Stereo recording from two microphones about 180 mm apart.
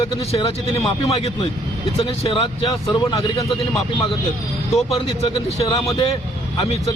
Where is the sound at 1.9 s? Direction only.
30° left (ahead or behind).